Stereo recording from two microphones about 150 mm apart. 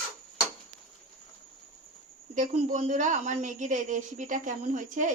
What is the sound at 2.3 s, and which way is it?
A woman's voice, 55° right (ahead or behind).